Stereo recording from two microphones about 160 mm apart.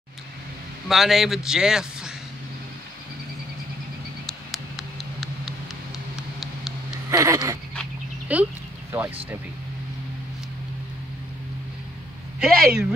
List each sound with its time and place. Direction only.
0.8 s a man's voice: centre (ahead or behind)
4.3 s a sound: centre (ahead or behind)
7.1 s speech: 20° right (ahead or behind)
8.3 s speech: 10° right (ahead or behind)
12.4 s a man's voice: 5° right (ahead or behind)